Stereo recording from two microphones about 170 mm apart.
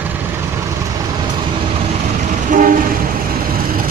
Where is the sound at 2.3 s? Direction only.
50° right (ahead or behind).